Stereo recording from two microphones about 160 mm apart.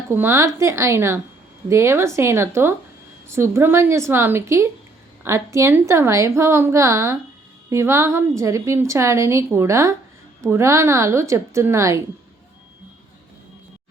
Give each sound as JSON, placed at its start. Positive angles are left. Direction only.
{"t": 0.1, "sound": "a woman's voice", "side_deg": -15}